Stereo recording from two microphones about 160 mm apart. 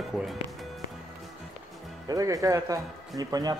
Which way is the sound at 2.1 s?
20° right (ahead or behind).